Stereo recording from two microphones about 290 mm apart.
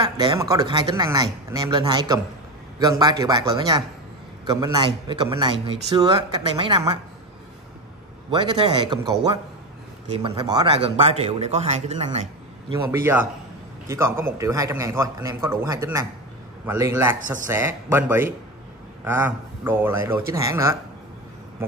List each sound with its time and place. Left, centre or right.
0.0 s speech: centre
8.3 s speech: centre
10.1 s speech: centre
12.6 s speech: centre